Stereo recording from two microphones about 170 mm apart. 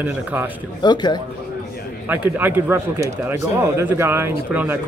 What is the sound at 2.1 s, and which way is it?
Speech, 10° right (ahead or behind).